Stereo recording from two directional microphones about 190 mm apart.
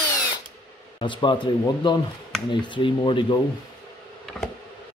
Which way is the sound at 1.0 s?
25° left (ahead or behind).